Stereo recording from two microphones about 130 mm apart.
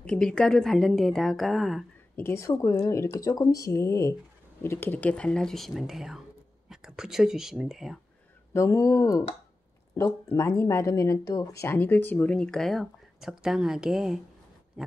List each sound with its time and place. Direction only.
0.0 s a woman's voice: 5° left (ahead or behind)
2.1 s a woman's voice: 20° left (ahead or behind); by 8.0 s centre (ahead or behind)
8.5 s speech: 25° left (ahead or behind); by 14.2 s 5° right (ahead or behind)
14.8 s a sound: 5° right (ahead or behind)